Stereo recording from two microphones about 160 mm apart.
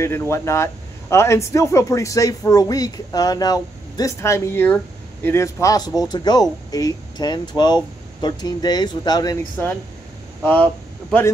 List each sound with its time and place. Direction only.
0.0 s speech: 15° left (ahead or behind)
10.4 s speech: 5° left (ahead or behind)